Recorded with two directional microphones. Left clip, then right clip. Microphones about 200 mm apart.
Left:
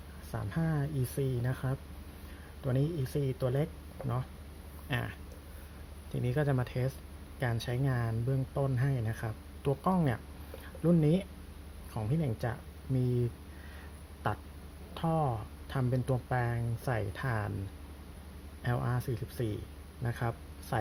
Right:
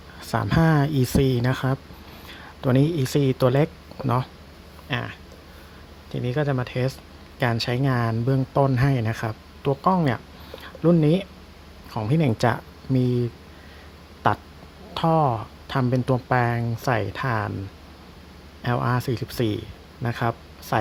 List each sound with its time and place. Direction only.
0.3 s speech: 25° right (ahead or behind)
4.9 s speech: 5° right (ahead or behind)
14.9 s speech: 15° right (ahead or behind)
18.6 s speech: 10° right (ahead or behind)